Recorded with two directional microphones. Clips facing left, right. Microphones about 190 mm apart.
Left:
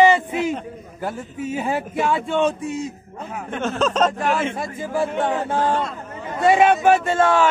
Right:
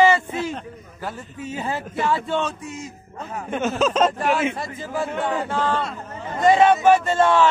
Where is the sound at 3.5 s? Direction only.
5° right (ahead or behind).